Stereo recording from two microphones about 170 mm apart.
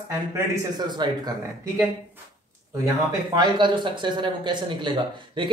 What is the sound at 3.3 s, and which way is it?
Speech, 30° right (ahead or behind).